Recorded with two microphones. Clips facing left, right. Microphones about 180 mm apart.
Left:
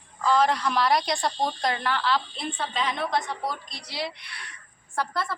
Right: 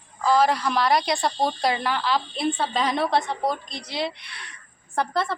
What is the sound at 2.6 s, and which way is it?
A woman's voice, 35° right (ahead or behind).